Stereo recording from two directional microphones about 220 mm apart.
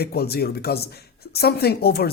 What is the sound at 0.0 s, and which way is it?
Speech, 45° left (ahead or behind).